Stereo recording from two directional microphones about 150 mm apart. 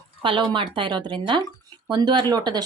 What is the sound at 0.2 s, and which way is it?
Speech, 35° right (ahead or behind).